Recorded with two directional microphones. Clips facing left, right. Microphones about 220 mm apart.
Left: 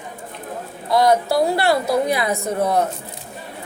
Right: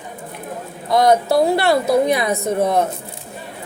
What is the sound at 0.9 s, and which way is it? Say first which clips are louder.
A woman's voice: right 2 dB; 25° right (ahead or behind).